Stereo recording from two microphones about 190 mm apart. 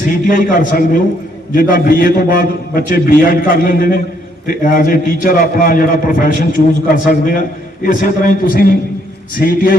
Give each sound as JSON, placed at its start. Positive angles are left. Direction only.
{"t": 0.1, "sound": "a man's voice", "side_deg": 45}